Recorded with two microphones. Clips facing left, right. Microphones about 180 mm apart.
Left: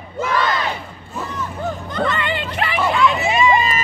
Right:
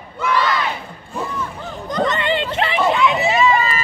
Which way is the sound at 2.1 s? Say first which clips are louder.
Right 4 dB; 25° right (ahead or behind).